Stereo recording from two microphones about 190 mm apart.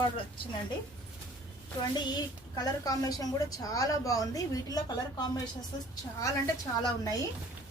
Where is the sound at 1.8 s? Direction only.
20° left (ahead or behind).